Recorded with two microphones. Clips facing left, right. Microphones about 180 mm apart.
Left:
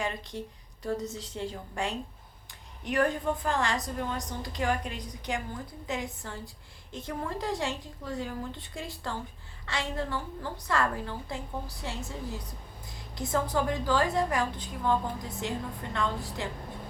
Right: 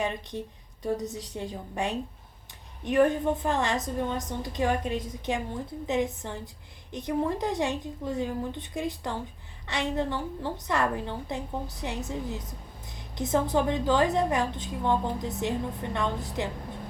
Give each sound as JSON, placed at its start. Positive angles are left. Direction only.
{"t": 0.0, "sound": "a woman's voice", "side_deg": -20}